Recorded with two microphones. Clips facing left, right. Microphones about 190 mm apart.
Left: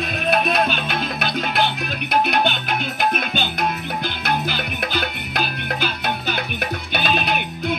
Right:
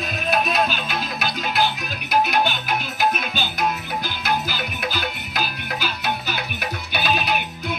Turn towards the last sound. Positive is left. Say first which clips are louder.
# left 2 dB
turn(degrees=55)  # may be behind; listen again after turning